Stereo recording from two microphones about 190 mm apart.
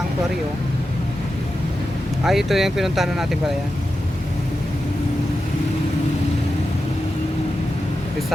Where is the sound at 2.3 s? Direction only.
Centre (ahead or behind).